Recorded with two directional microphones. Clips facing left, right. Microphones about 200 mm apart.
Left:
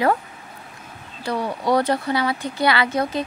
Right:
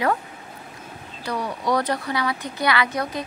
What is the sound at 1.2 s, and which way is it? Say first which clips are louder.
A woman's voice: left 3 dB; 30° left (ahead or behind).